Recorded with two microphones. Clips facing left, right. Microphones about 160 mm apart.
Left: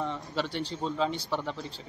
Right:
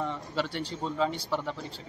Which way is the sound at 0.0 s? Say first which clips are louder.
Even; 20° left (ahead or behind).